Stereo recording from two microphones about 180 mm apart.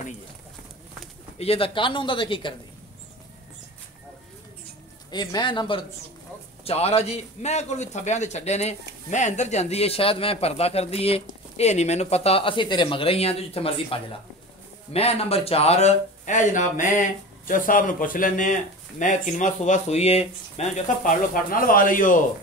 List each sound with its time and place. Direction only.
1.4 s speech: 30° left (ahead or behind)
5.1 s a man's voice: 25° left (ahead or behind); by 22.2 s 50° left (ahead or behind)